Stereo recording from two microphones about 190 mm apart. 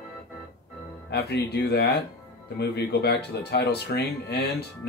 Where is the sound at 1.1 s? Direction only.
60° left (ahead or behind).